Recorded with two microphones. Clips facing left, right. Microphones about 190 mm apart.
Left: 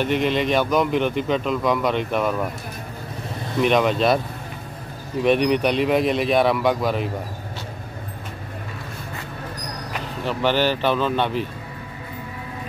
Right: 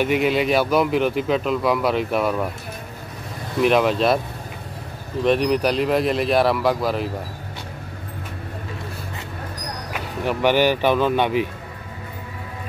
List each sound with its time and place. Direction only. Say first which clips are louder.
0.0 s speech: right 2 dB; 10° right (ahead or behind)
3.6 s speech: right 1 dB; centre (ahead or behind)
5.2 s speech: even; centre (ahead or behind)
9.9 s speech: right 2 dB; 10° right (ahead or behind)